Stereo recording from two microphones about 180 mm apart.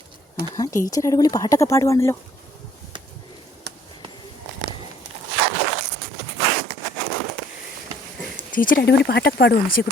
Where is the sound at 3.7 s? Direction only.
70° right (ahead or behind).